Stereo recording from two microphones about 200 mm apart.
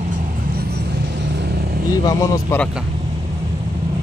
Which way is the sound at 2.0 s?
15° left (ahead or behind).